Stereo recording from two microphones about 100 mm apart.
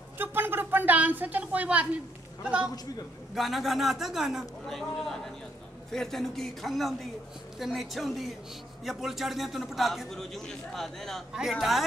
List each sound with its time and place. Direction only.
0.2 s a man's voice: 20° right (ahead or behind); by 11.8 s centre (ahead or behind)